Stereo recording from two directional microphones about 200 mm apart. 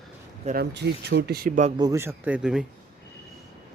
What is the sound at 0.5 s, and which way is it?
Speech, 55° right (ahead or behind).